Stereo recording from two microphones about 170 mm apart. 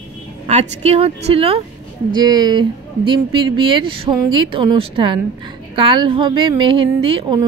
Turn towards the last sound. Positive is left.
turn(degrees=-30)  # may be behind; listen again after turning